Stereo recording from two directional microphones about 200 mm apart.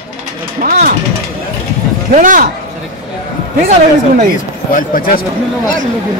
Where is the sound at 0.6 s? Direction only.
45° right (ahead or behind).